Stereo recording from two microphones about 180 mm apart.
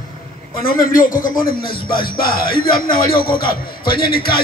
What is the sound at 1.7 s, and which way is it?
Music, 55° left (ahead or behind).